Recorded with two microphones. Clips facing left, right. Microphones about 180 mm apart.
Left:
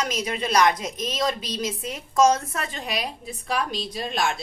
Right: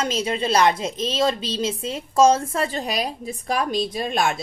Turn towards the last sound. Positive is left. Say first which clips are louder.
# right 4 dB
turn(degrees=-55)  # may be behind; listen again after turning